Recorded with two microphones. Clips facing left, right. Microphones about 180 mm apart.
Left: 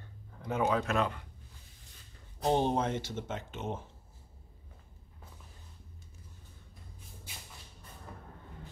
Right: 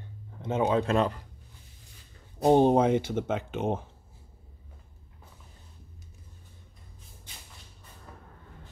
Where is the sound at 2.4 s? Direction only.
50° right (ahead or behind).